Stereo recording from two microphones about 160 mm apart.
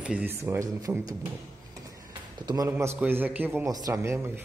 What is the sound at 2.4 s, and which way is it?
Speech, 25° right (ahead or behind).